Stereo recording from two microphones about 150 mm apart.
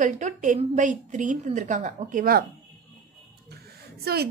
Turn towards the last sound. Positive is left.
turn(degrees=-90)